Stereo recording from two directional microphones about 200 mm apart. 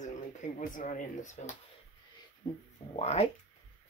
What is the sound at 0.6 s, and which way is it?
Speech, 40° left (ahead or behind).